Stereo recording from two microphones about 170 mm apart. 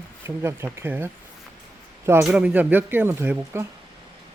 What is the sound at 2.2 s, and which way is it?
Speech, 5° right (ahead or behind).